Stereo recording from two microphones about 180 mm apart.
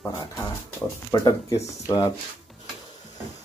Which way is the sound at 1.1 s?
20° left (ahead or behind).